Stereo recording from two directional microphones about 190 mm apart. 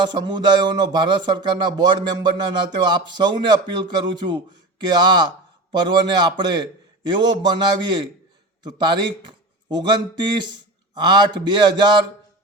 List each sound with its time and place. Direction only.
0.0 s a man's voice: 20° right (ahead or behind)